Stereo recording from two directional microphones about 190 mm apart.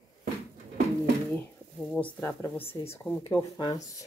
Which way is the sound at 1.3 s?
5° left (ahead or behind).